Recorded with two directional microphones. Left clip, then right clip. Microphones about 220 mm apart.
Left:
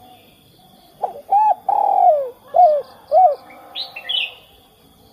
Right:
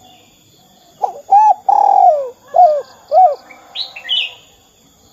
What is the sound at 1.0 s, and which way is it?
Bird, 20° right (ahead or behind).